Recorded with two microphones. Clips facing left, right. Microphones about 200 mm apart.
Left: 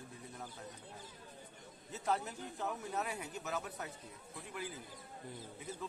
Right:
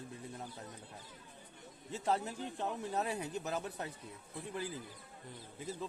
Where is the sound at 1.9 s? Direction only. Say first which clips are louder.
Right 2 dB; 30° right (ahead or behind).